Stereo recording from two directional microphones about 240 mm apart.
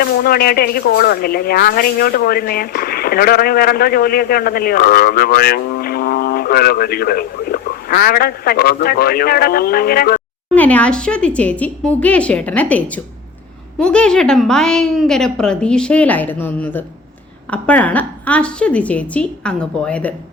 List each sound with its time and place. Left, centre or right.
0.0 s speech: left
10.5 s a woman's voice: centre